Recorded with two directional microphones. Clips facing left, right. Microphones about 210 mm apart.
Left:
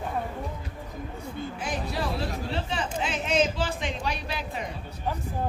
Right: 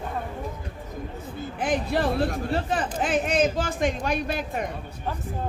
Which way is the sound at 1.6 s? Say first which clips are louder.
Right 8 dB; 55° right (ahead or behind).